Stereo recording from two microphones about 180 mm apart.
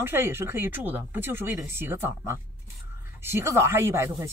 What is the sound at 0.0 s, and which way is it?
Speech, 15° right (ahead or behind).